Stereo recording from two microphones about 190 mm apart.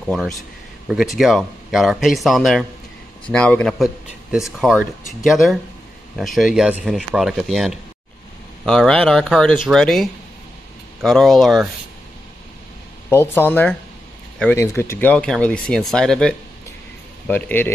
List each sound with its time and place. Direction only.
0.0 s speech: centre (ahead or behind)
13.1 s speech: 10° left (ahead or behind)